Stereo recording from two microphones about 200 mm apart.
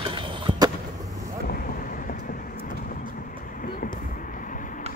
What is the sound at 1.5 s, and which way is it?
Vehicle, 45° left (ahead or behind).